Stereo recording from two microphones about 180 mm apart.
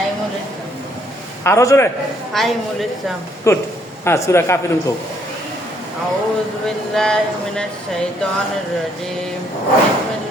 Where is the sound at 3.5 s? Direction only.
15° left (ahead or behind).